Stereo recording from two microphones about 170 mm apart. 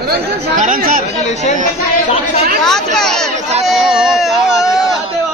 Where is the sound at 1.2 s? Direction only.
45° left (ahead or behind).